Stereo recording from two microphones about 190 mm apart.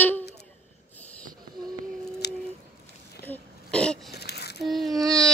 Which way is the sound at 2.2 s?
60° left (ahead or behind).